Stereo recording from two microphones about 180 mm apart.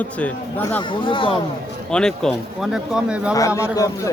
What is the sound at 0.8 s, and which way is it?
Speech, 30° left (ahead or behind).